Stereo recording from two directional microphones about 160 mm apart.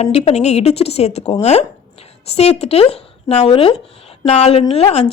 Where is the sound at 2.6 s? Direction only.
40° left (ahead or behind).